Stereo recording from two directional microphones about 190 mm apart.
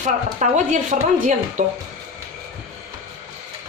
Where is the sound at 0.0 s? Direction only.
40° right (ahead or behind).